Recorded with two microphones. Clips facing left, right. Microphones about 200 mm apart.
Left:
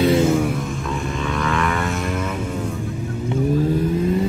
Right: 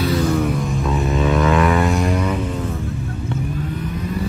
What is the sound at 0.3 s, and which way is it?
Vehicle, 5° left (ahead or behind).